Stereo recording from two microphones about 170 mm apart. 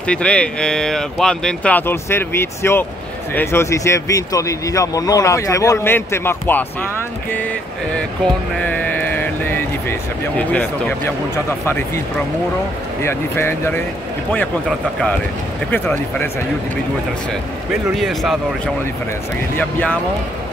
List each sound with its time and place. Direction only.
0.0 s speech: 5° left (ahead or behind)
8.6 s speech: 10° left (ahead or behind)
13.0 s speech: 15° left (ahead or behind)
15.7 s speech: 10° left (ahead or behind)
17.9 s speech: centre (ahead or behind)
19.5 s speech: 10° left (ahead or behind)